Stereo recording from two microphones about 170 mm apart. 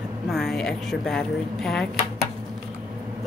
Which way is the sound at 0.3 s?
Centre (ahead or behind).